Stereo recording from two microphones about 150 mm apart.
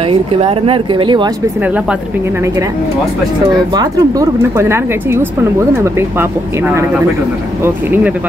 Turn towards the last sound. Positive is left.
turn(degrees=-15)  # may be behind; listen again after turning